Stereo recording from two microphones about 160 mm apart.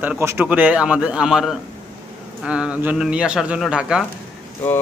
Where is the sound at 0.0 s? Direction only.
15° right (ahead or behind).